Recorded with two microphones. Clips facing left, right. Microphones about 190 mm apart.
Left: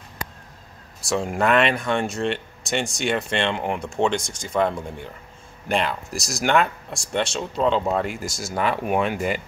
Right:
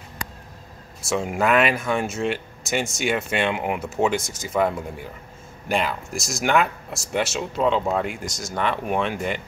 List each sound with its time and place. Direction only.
1.0 s speech: centre (ahead or behind)